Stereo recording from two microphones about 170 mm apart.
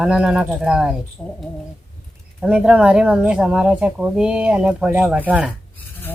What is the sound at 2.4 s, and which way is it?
Speech, 5° right (ahead or behind).